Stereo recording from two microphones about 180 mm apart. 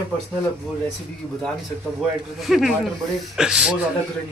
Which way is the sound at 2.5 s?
Centre (ahead or behind).